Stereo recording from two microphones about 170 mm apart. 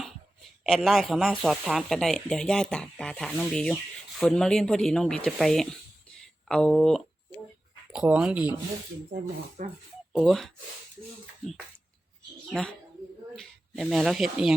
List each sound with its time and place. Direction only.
0.6 s speech: centre (ahead or behind)
6.2 s a sound: 5° left (ahead or behind)
7.9 s speech: 5° right (ahead or behind)
9.1 s speech: 70° right (ahead or behind)
9.6 s speech: 55° right (ahead or behind)
10.1 s speech: centre (ahead or behind)
12.5 s speech: 5° left (ahead or behind)